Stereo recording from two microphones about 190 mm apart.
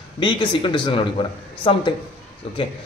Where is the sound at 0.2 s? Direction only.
25° left (ahead or behind).